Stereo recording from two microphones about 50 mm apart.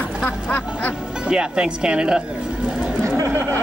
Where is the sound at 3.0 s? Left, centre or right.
Right.